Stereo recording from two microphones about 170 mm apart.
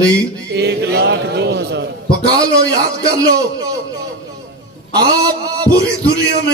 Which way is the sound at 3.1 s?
20° right (ahead or behind).